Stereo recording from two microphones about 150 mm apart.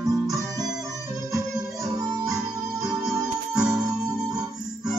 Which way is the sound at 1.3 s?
25° right (ahead or behind).